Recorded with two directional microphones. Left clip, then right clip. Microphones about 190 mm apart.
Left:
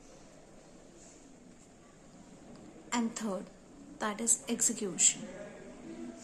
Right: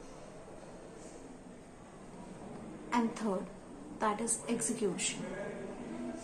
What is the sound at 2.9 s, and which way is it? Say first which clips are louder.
A woman's voice: right 2 dB; 40° left (ahead or behind).